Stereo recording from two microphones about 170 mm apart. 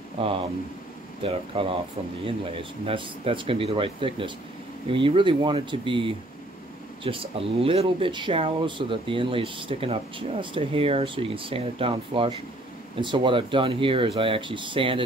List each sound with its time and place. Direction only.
0.2 s speech: 30° right (ahead or behind)
2.9 s speech: 30° right (ahead or behind)